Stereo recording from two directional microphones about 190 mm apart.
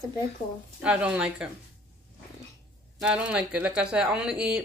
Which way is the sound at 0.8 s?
5° right (ahead or behind).